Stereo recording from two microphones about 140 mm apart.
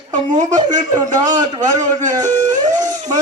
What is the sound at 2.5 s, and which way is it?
Music, 60° right (ahead or behind).